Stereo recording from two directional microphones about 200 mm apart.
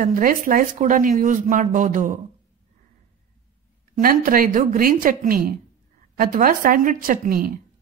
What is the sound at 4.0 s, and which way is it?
Speech, 45° right (ahead or behind).